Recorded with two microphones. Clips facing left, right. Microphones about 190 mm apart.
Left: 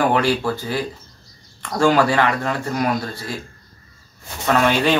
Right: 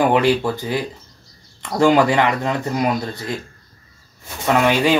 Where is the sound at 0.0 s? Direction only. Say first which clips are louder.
Right 2 dB; 15° right (ahead or behind).